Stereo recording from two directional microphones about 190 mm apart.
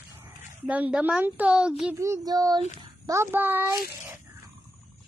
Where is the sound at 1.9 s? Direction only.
15° right (ahead or behind).